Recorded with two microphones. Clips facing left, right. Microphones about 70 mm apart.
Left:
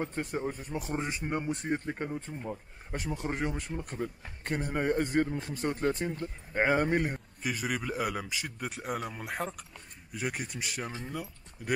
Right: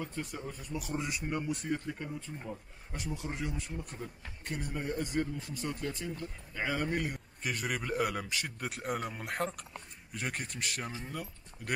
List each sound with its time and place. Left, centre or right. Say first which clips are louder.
0.0 s a man's voice: left 6 dB; left
7.4 s a man's voice: left 2 dB; centre